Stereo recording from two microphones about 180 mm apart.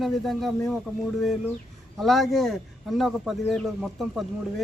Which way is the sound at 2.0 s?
Centre (ahead or behind).